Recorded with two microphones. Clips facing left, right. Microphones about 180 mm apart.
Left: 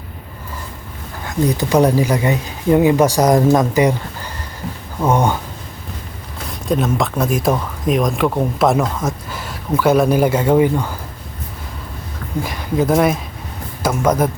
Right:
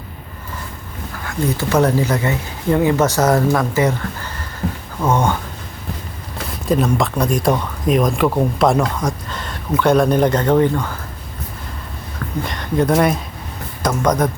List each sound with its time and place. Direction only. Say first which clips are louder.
1.2 s speech: left 3 dB; 20° left (ahead or behind)
6.5 s speech: right 1 dB; centre (ahead or behind)
12.4 s speech: even; 5° left (ahead or behind)